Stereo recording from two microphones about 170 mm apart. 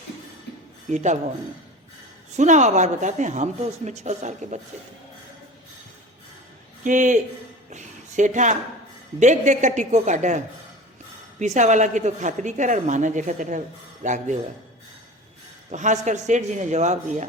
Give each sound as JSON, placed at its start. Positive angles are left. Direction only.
{"t": 0.9, "sound": "a woman's voice", "side_deg": -45}
{"t": 2.3, "sound": "a woman's voice", "side_deg": -45}
{"t": 6.8, "sound": "a woman's voice", "side_deg": -45}
{"t": 7.7, "sound": "a sound", "side_deg": -45}
{"t": 9.2, "sound": "a woman's voice", "side_deg": -45}
{"t": 15.7, "sound": "a woman's voice", "side_deg": -45}